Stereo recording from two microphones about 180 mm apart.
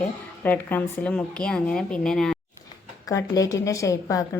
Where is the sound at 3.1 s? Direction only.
20° left (ahead or behind).